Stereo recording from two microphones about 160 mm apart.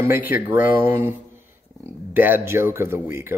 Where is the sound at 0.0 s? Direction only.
10° right (ahead or behind).